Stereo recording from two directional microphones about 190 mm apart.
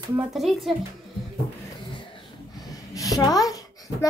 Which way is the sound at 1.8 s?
25° left (ahead or behind).